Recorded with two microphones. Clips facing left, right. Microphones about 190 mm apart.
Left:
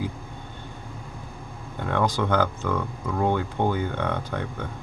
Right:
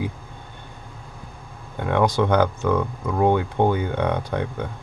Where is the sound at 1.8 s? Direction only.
15° right (ahead or behind).